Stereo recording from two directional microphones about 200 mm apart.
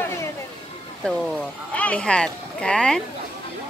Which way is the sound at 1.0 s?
5° left (ahead or behind).